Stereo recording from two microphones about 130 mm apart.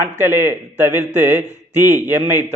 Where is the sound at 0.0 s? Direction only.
20° right (ahead or behind).